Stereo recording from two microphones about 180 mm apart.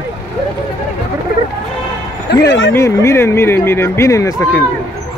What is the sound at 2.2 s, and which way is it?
Speech, 80° left.